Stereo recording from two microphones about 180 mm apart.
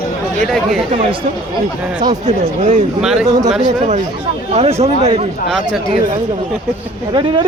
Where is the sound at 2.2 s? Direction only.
40° right (ahead or behind).